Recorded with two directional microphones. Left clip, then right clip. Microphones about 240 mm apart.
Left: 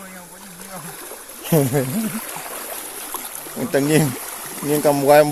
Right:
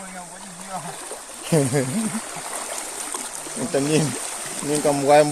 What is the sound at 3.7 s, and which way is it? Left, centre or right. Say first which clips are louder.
Speech: left 4 dB; left.